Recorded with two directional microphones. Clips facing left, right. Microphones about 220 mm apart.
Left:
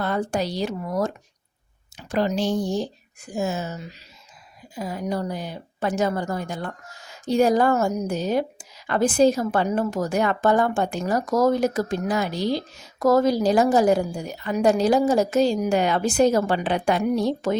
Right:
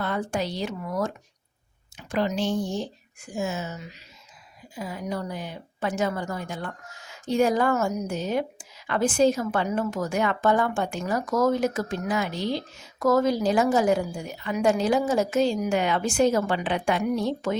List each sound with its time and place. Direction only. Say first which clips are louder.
0.0 s a woman's voice: left 3 dB; 40° left (ahead or behind)